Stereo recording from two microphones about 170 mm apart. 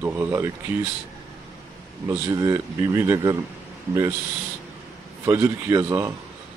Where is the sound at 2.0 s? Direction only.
20° right (ahead or behind).